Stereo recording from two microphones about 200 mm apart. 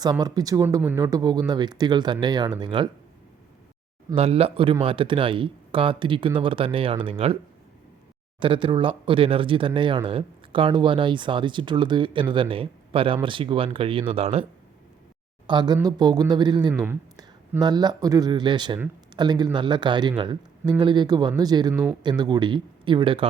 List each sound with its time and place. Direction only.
0.0 s speech: 20° right (ahead or behind)
4.1 s speech: 30° right (ahead or behind)
8.4 s speech: 25° right (ahead or behind)
15.4 s speech: 20° right (ahead or behind)
16.7 s speech: 10° right (ahead or behind)